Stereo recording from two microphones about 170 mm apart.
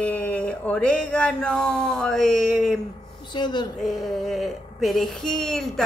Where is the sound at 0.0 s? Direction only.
10° left (ahead or behind).